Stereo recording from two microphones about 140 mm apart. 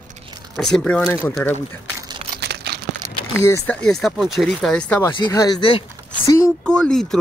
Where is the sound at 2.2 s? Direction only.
45° right (ahead or behind).